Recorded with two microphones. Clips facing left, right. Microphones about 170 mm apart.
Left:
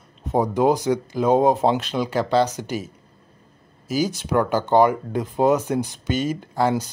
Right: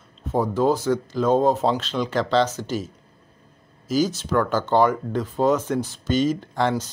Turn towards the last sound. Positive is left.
turn(degrees=10)  # may be behind; listen again after turning